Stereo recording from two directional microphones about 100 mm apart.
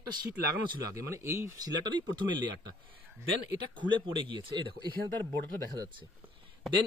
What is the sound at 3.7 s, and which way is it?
Speech, 55° right (ahead or behind).